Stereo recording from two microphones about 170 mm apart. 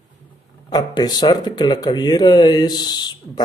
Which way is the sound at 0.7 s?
25° left (ahead or behind).